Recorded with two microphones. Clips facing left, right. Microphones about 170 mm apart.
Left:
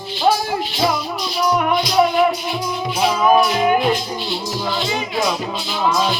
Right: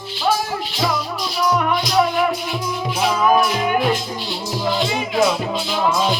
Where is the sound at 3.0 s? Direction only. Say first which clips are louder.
Left 2 dB; 10° left (ahead or behind).